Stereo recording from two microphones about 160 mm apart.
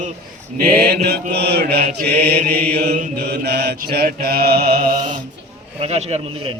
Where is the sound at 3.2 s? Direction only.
90° right.